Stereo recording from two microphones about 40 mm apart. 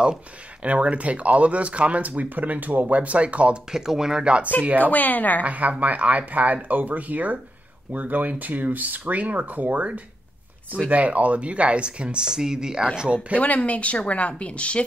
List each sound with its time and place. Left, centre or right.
0.6 s speech: right
3.7 s speech: centre
4.2 s speech: right
4.9 s a woman's voice: left
5.4 s speech: right
10.9 s speech: right
12.3 s speech: centre
13.3 s speech: right
13.7 s a woman's voice: left